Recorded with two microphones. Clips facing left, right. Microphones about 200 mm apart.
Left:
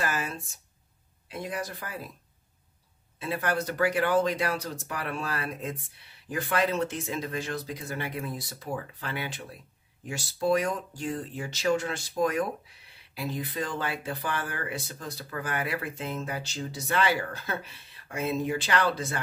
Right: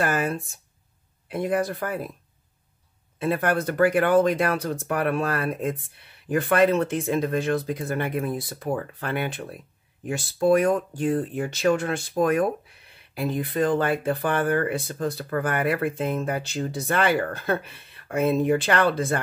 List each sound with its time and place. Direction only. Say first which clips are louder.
0.0 s speech: right 7 dB; 55° right (ahead or behind)
3.2 s speech: right 6 dB; 55° right (ahead or behind)